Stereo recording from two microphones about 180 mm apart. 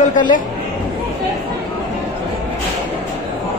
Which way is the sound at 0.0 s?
45° left (ahead or behind).